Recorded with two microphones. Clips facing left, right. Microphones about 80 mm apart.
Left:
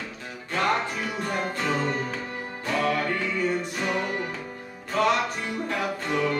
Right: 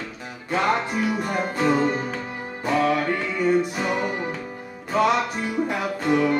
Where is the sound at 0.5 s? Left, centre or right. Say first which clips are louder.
Right 3 dB; centre.